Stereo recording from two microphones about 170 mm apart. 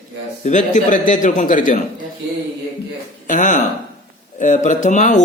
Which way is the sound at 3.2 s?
50° left (ahead or behind).